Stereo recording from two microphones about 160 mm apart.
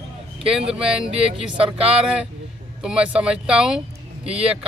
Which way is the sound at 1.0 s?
35° right (ahead or behind).